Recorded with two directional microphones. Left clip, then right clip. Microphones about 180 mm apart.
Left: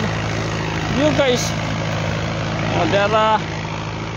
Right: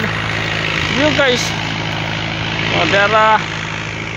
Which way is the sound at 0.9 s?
50° left (ahead or behind).